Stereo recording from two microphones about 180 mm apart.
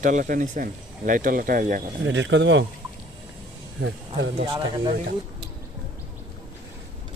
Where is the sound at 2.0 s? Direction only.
90° right.